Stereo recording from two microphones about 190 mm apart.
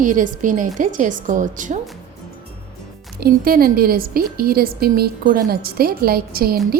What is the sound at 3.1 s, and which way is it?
A woman's voice, 50° right (ahead or behind).